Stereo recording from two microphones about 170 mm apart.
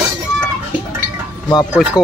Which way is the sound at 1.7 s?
5° right (ahead or behind).